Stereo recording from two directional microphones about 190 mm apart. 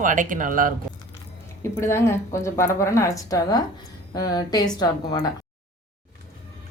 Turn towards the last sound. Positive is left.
turn(degrees=20)  # may be behind; listen again after turning